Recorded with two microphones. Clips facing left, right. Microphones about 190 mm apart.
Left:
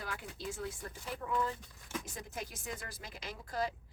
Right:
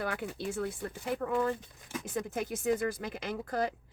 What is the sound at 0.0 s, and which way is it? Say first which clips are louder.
Speech: right 8 dB; 60° right (ahead or behind).